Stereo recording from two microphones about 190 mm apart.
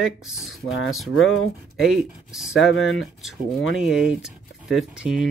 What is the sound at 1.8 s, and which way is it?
Speech, centre (ahead or behind).